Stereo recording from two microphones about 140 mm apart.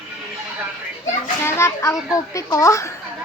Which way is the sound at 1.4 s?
20° left (ahead or behind).